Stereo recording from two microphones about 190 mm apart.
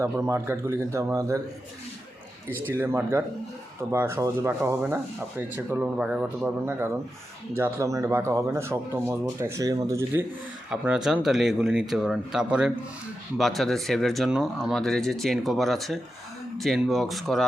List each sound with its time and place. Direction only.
0.0 s speech: 15° right (ahead or behind)
2.7 s speech: 15° right (ahead or behind)
10.7 s speech: 5° right (ahead or behind)